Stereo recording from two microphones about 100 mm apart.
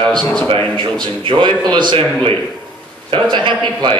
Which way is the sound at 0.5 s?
50° right (ahead or behind).